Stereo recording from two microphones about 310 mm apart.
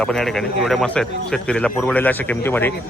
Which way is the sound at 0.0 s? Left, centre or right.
Centre.